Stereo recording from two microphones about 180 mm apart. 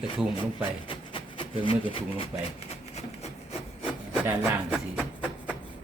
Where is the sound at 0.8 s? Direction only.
25° left (ahead or behind).